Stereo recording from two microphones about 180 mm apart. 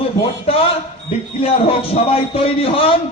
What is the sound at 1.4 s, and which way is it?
A man's voice, 30° left (ahead or behind).